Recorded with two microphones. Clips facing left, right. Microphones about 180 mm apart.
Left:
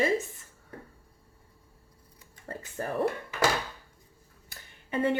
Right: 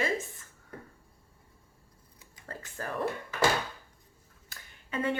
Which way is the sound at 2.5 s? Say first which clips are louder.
Left 4 dB; 25° left (ahead or behind).